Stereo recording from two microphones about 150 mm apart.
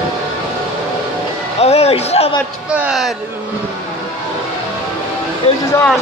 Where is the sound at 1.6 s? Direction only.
45° left (ahead or behind).